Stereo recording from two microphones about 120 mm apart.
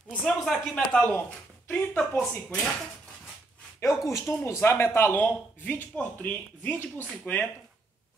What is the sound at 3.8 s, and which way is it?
Speech, 25° left (ahead or behind).